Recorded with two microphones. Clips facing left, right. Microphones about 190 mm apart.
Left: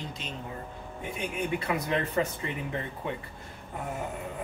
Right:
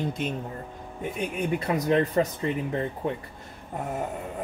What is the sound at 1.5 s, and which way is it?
Speech, 40° right (ahead or behind).